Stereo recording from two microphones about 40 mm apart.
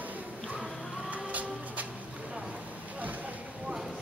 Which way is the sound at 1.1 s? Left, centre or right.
Right.